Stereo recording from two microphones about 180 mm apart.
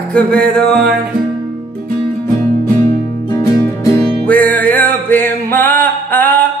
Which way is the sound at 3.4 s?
20° left (ahead or behind).